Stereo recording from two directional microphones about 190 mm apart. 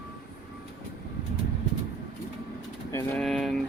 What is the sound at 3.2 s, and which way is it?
Speech, centre (ahead or behind).